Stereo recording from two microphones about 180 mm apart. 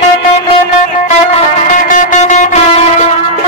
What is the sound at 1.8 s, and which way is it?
Music, 45° left (ahead or behind).